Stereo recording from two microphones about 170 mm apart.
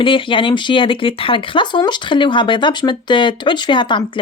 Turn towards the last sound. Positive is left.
turn(degrees=30)  # may be behind; listen again after turning